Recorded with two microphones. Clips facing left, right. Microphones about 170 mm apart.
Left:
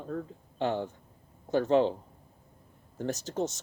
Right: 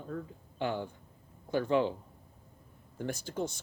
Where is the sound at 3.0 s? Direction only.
40° left (ahead or behind).